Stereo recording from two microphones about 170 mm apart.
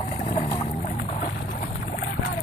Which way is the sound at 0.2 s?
50° left (ahead or behind).